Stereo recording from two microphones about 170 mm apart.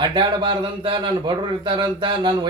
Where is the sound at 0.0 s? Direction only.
25° right (ahead or behind).